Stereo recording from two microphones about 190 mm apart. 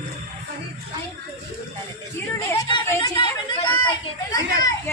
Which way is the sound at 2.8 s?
15° left (ahead or behind).